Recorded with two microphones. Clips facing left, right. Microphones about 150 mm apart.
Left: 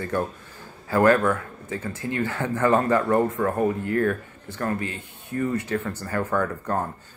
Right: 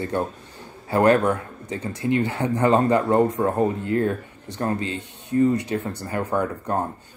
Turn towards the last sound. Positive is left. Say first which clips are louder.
# right 1 dB
turn(degrees=-20)  # may be behind; listen again after turning